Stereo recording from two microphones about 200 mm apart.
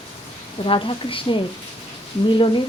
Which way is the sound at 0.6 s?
25° left (ahead or behind).